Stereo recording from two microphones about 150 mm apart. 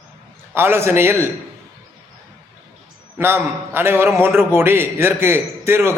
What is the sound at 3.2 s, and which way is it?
A man's voice, 15° right (ahead or behind).